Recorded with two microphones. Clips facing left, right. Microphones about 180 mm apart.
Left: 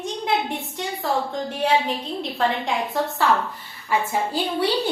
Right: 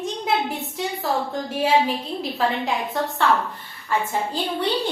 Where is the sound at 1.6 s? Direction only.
5° right (ahead or behind).